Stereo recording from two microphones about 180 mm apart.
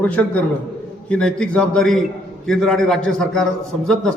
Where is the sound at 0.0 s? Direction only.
10° left (ahead or behind).